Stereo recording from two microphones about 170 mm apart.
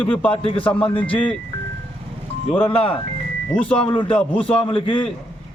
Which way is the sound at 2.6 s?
30° left (ahead or behind).